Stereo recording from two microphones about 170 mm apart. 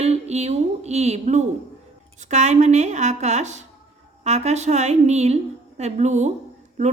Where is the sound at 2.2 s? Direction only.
45° right (ahead or behind).